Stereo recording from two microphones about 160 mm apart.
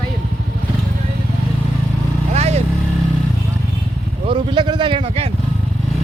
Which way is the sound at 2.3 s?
40° right (ahead or behind).